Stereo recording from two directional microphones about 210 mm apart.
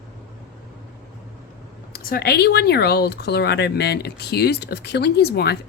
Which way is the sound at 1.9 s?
45° left (ahead or behind).